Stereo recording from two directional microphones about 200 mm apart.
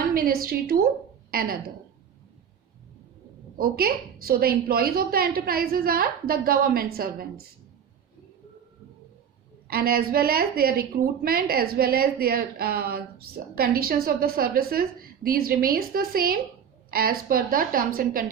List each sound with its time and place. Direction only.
0.1 s a woman's voice: 45° right (ahead or behind)
3.6 s a woman's voice: 50° right (ahead or behind)
9.6 s a woman's voice: 50° right (ahead or behind)